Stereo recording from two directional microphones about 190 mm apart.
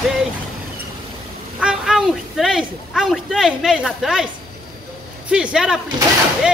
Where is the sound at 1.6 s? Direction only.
5° right (ahead or behind).